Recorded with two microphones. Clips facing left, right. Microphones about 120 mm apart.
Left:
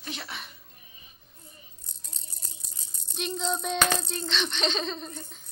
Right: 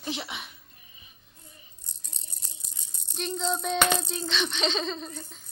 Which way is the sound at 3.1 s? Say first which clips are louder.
Right 1 dB; 5° left (ahead or behind).